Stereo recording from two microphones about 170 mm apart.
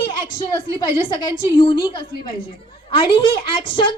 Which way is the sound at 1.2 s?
30° left (ahead or behind).